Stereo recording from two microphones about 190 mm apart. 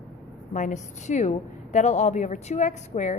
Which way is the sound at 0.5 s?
40° left (ahead or behind).